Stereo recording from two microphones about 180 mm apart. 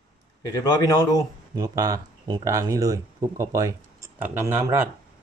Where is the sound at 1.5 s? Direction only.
20° right (ahead or behind).